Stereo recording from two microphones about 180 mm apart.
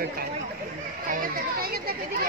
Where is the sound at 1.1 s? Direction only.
55° right (ahead or behind).